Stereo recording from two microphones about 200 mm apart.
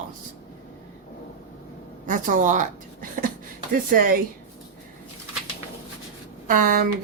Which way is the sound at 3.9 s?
45° right (ahead or behind).